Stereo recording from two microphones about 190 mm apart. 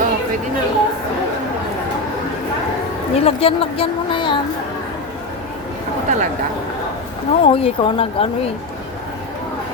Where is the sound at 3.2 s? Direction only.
30° left (ahead or behind).